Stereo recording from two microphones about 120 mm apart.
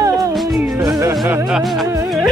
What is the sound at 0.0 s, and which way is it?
Music, 30° right (ahead or behind).